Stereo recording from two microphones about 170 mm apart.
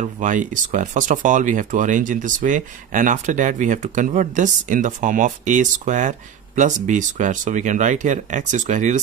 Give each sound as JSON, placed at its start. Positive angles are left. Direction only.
{"t": 0.0, "sound": "speech", "side_deg": -50}